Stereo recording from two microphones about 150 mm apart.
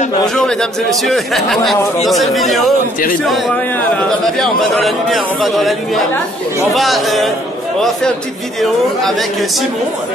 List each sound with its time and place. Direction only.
0.3 s a man's voice: 5° left (ahead or behind)
8.5 s a man's voice: centre (ahead or behind)